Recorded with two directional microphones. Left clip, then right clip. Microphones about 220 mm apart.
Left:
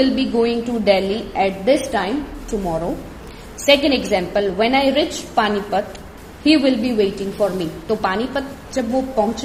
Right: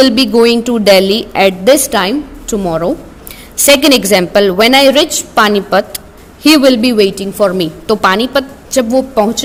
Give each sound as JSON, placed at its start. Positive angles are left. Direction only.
{"t": 0.0, "sound": "a woman's voice", "side_deg": -50}